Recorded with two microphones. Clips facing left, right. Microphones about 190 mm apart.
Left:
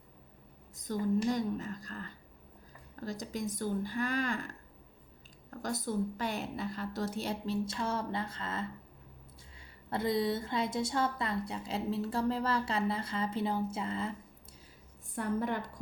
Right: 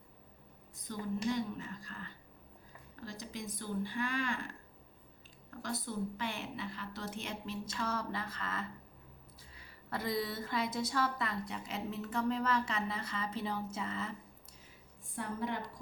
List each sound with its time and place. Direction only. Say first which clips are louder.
0.9 s a woman's voice: left 5 dB; 40° left (ahead or behind)
5.5 s a woman's voice: left 5 dB; 45° left (ahead or behind); by 8.6 s 30° left (ahead or behind)
9.9 s a woman's voice: left 6 dB; 25° left (ahead or behind)
15.1 s speech: left 5 dB; 50° left (ahead or behind)